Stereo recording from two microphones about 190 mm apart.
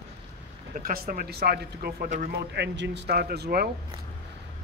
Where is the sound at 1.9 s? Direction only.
40° right (ahead or behind).